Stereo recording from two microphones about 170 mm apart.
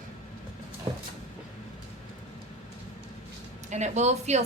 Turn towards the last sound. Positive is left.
turn(degrees=-40)  # may be behind; listen again after turning